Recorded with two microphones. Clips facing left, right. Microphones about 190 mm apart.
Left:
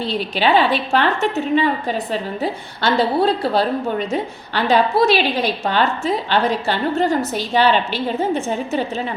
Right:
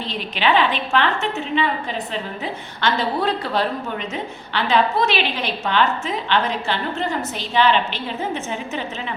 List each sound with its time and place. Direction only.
0.0 s a woman's voice: 35° left (ahead or behind)
2.4 s a woman's voice: 35° left (ahead or behind)